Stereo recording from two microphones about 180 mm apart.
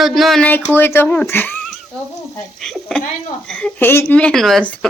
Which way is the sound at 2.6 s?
5° left (ahead or behind).